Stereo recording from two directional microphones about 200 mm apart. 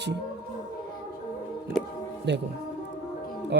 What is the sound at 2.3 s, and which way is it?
Speech, 60° right (ahead or behind).